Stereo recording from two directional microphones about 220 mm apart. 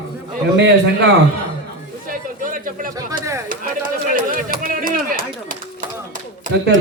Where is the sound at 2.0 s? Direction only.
40° right (ahead or behind).